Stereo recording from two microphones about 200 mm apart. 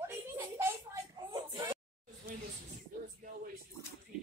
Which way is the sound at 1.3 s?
25° right (ahead or behind).